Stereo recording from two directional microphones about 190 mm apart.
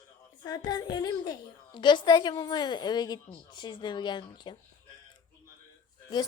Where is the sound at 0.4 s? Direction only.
20° left (ahead or behind).